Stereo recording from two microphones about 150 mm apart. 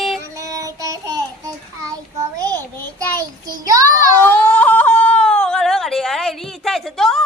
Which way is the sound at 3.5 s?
20° right (ahead or behind).